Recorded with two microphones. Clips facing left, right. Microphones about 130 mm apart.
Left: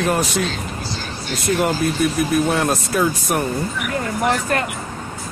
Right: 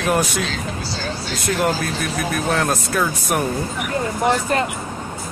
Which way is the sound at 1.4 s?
Centre (ahead or behind).